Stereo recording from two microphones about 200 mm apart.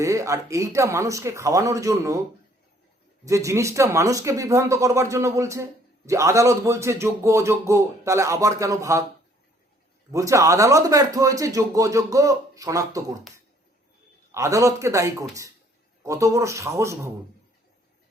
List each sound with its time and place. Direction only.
0.0 s speech: 15° right (ahead or behind)
3.2 s speech: 15° right (ahead or behind)
10.1 s speech: 15° right (ahead or behind)
14.3 s speech: 15° right (ahead or behind)